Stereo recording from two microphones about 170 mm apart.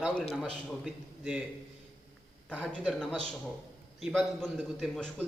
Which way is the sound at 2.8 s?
5° right (ahead or behind).